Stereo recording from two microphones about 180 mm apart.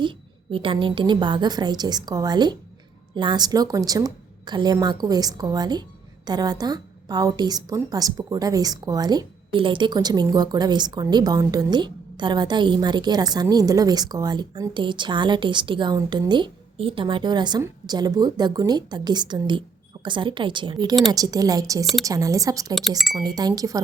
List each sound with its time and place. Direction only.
0.5 s a woman's voice: 30° right (ahead or behind)
23.0 s speech: centre (ahead or behind)
23.2 s a woman's voice: 20° right (ahead or behind)